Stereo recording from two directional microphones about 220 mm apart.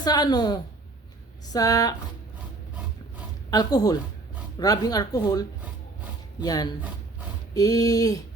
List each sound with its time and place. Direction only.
0.0 s a woman's voice: 20° left (ahead or behind)
3.5 s speech: 15° left (ahead or behind)